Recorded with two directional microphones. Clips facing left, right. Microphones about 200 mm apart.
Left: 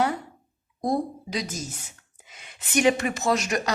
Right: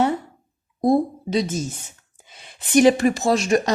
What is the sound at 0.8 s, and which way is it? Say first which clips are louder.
Speech: right 8 dB; 25° right (ahead or behind).